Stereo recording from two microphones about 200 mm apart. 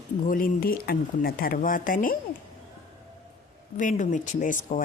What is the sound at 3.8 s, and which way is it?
Speech, 40° left (ahead or behind).